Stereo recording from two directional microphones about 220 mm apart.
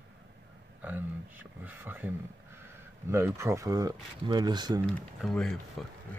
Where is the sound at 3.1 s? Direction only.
10° right (ahead or behind).